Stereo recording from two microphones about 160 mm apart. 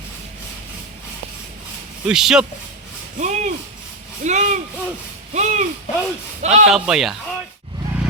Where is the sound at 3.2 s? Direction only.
50° right (ahead or behind).